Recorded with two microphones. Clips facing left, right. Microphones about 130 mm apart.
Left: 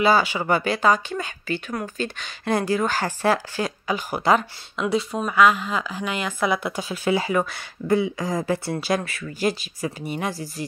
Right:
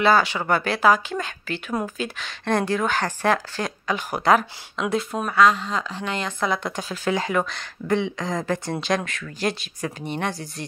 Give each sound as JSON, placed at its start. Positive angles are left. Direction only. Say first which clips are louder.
{"t": 0.0, "sound": "speech", "louder": "even", "side_deg": 5}